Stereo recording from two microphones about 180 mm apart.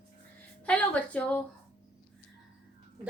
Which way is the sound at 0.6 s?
5° left (ahead or behind).